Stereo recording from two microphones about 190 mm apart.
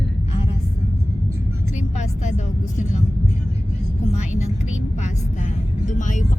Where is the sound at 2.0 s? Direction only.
40° left (ahead or behind).